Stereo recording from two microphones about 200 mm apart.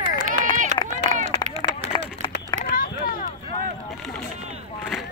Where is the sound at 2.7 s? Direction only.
45° left (ahead or behind).